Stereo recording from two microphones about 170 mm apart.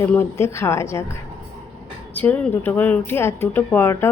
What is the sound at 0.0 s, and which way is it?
Speech, 15° left (ahead or behind).